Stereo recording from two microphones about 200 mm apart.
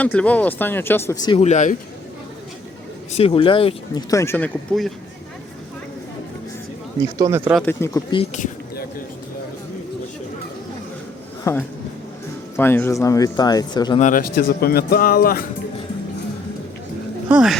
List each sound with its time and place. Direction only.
0.0 s speech: 5° left (ahead or behind)
1.4 s speech: 35° left (ahead or behind)
3.1 s speech: 30° left (ahead or behind)
4.1 s speech: 15° left (ahead or behind)
7.0 s speech: 15° right (ahead or behind)
7.5 s speech: 10° left (ahead or behind)
8.1 s speech: 30° left (ahead or behind)
11.5 s speech: 15° left (ahead or behind)
14.0 s speech: 45° left (ahead or behind)
17.2 s speech: 5° right (ahead or behind)